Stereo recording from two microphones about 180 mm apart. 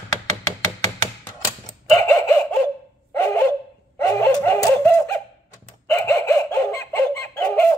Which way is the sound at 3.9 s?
15° left (ahead or behind).